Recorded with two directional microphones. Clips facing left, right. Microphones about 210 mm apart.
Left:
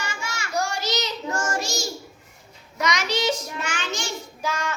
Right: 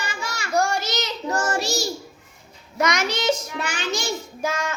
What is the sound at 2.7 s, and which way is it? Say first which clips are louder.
Child singing: right 2 dB; 50° right (ahead or behind).